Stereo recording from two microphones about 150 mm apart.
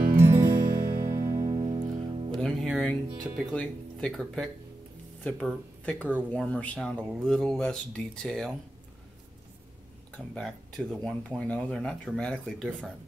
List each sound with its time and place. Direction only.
0.3 s music: 20° right (ahead or behind); by 2.2 s 40° right (ahead or behind)
2.3 s speech: centre (ahead or behind)
10.1 s speech: 5° left (ahead or behind)